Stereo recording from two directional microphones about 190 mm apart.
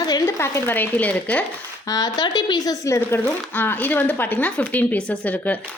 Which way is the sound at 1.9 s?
20° left (ahead or behind).